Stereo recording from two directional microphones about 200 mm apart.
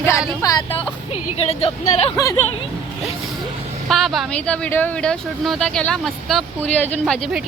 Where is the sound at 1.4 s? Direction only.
30° left (ahead or behind).